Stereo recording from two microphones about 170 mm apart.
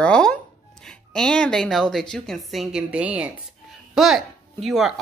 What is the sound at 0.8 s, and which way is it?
A woman's voice, 5° left (ahead or behind).